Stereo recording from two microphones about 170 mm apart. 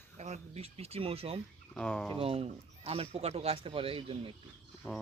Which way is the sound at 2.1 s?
35° right (ahead or behind).